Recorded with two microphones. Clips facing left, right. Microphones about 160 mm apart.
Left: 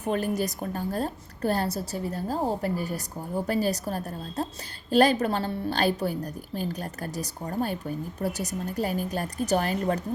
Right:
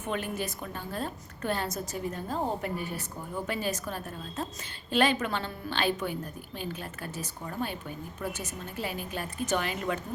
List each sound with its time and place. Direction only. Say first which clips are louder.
0.0 s a woman's voice: left 6 dB; 40° left (ahead or behind)